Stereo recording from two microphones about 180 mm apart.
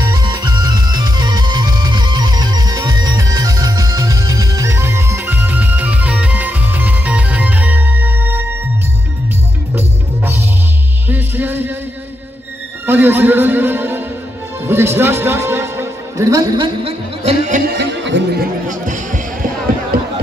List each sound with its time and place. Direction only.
0.0 s music: 20° right (ahead or behind)
9.8 s music: 10° right (ahead or behind)
12.8 s music: 10° right (ahead or behind); by 17.6 s 35° right (ahead or behind)
17.6 s music: 65° right (ahead or behind); by 19.2 s 45° right (ahead or behind)